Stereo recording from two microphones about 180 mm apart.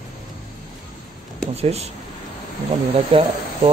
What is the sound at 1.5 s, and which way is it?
Speech, 35° right (ahead or behind).